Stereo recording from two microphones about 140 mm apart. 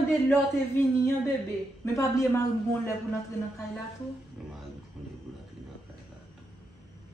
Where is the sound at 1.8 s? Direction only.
20° left (ahead or behind).